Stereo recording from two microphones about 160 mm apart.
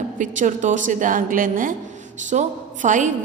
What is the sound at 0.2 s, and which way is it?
A woman's voice, 50° right (ahead or behind).